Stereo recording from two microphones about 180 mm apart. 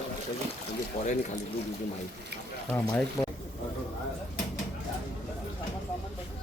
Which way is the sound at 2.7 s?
Centre (ahead or behind).